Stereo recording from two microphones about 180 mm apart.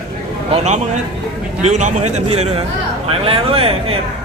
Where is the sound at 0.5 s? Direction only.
40° right (ahead or behind).